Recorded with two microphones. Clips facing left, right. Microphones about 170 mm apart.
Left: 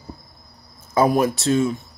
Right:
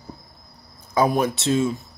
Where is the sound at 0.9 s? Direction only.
5° left (ahead or behind).